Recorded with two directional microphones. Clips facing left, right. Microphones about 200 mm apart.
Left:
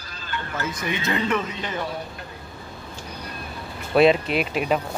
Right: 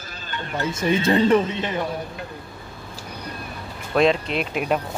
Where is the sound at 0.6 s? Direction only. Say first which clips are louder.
Right 8 dB; 30° right (ahead or behind).